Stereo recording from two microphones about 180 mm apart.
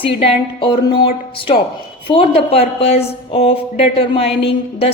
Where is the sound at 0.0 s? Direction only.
30° left (ahead or behind).